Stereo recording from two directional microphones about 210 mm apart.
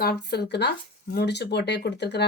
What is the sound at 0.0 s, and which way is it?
Speech, 50° left (ahead or behind).